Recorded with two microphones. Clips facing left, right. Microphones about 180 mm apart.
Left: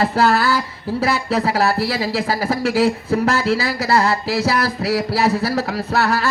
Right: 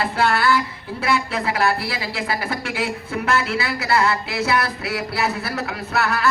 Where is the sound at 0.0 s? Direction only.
40° left (ahead or behind).